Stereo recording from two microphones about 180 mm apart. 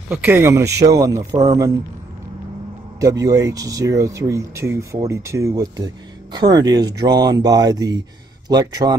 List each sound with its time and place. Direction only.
0.1 s speech: 10° right (ahead or behind)
3.0 s speech: 20° right (ahead or behind)